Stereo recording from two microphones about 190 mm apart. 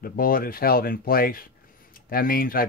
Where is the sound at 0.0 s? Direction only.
50° left (ahead or behind).